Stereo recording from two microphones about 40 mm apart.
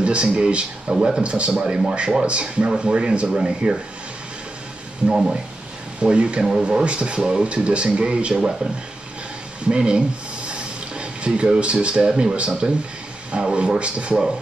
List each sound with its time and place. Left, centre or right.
0.0 s speech: right
5.0 s speech: centre
5.9 s speech: right
9.7 s speech: right